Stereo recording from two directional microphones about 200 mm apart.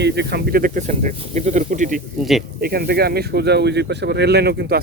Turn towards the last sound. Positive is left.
turn(degrees=-55)  # may be behind; listen again after turning